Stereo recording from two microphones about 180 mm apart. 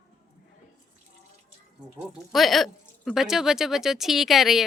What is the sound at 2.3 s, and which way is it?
Speech, centre (ahead or behind).